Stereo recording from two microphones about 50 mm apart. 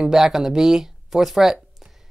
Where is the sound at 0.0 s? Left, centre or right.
Centre.